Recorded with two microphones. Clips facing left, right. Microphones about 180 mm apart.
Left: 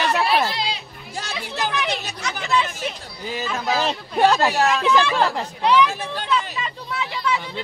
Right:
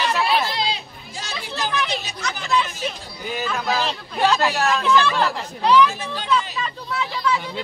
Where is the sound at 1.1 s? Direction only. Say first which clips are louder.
Left 2 dB; 55° left (ahead or behind).